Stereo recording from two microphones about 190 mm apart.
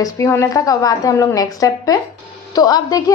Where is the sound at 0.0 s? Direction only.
15° left (ahead or behind).